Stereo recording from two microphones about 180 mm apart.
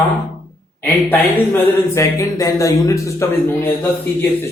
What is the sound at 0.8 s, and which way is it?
Speech, 10° left (ahead or behind).